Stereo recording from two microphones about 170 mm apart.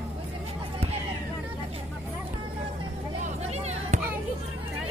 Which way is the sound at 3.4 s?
40° right (ahead or behind).